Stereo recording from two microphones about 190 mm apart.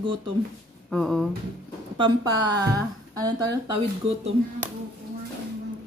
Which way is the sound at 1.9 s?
25° right (ahead or behind).